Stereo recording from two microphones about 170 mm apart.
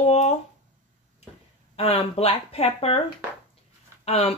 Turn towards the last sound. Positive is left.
turn(degrees=35)  # may be behind; listen again after turning